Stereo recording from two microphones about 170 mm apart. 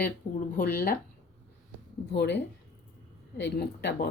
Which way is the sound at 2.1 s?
90° left.